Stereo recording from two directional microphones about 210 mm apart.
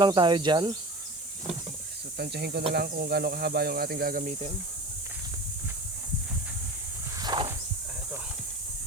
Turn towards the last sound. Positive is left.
turn(degrees=-20)  # may be behind; listen again after turning